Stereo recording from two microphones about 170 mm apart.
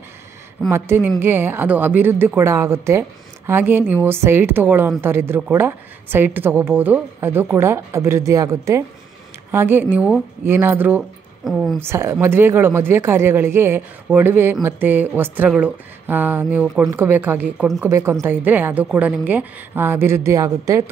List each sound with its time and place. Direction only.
0.7 s speech: 15° right (ahead or behind)
11.8 s speech: 15° right (ahead or behind)